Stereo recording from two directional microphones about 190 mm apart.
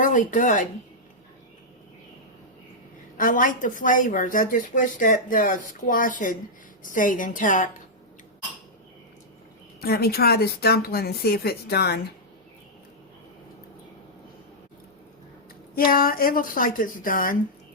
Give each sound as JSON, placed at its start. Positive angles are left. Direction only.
{"t": 0.0, "sound": "speech", "side_deg": 45}
{"t": 3.2, "sound": "speech", "side_deg": 45}
{"t": 9.8, "sound": "speech", "side_deg": 55}
{"t": 15.7, "sound": "speech", "side_deg": 50}